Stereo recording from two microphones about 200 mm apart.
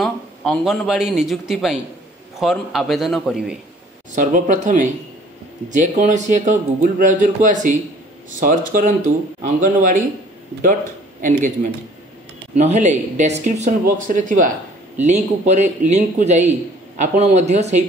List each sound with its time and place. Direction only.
0.0 s a man's voice: centre (ahead or behind)
4.1 s a man's voice: 40° right (ahead or behind)